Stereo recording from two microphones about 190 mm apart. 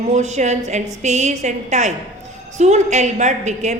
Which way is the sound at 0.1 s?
35° right (ahead or behind).